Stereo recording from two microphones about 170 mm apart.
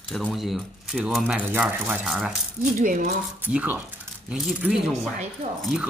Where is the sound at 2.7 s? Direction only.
55° right (ahead or behind).